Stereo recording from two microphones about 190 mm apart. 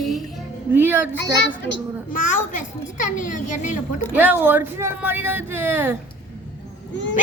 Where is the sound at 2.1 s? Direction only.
45° left (ahead or behind).